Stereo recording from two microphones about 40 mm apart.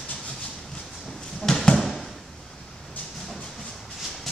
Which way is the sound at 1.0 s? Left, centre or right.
Centre.